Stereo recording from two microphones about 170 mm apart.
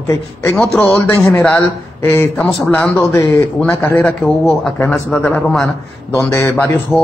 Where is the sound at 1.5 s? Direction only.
10° left (ahead or behind).